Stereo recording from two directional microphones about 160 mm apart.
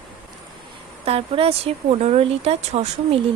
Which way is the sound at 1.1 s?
40° right (ahead or behind).